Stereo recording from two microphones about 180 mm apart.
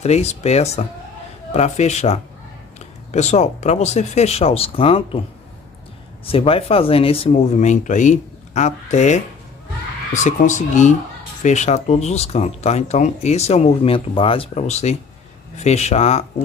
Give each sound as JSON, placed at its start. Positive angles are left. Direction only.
{"t": 0.0, "sound": "speech", "side_deg": 35}
{"t": 6.2, "sound": "speech", "side_deg": 30}
{"t": 10.2, "sound": "speech", "side_deg": 40}